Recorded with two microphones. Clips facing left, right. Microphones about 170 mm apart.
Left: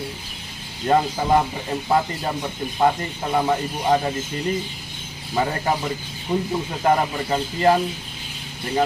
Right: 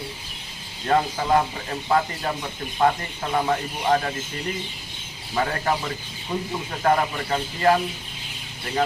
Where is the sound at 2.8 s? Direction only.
15° left (ahead or behind).